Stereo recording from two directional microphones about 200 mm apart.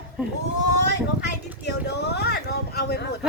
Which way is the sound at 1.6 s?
55° left (ahead or behind).